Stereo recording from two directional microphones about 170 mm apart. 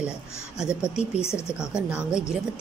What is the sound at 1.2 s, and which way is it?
Speech, 15° left (ahead or behind).